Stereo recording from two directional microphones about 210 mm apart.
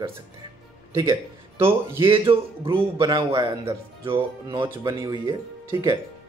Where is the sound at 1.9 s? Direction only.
25° right (ahead or behind).